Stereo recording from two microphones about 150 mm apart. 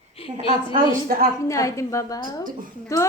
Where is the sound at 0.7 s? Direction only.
75° right (ahead or behind).